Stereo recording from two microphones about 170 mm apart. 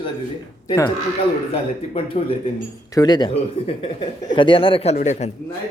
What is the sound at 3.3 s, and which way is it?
A man's voice, 35° left (ahead or behind).